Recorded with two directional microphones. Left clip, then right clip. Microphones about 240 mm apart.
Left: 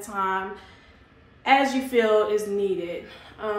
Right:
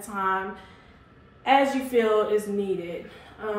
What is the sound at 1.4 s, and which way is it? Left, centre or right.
Speech, centre.